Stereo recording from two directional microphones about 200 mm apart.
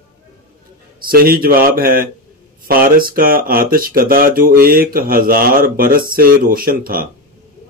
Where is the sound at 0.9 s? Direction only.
45° right (ahead or behind).